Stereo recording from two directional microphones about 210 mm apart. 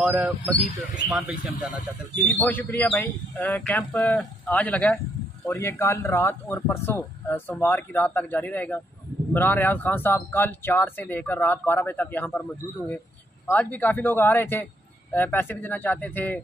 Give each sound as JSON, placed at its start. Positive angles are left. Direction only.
{"t": 0.0, "sound": "speech", "side_deg": -5}
{"t": 2.2, "sound": "speech", "side_deg": 10}